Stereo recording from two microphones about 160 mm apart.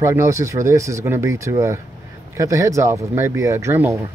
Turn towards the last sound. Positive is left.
turn(degrees=-15)  # may be behind; listen again after turning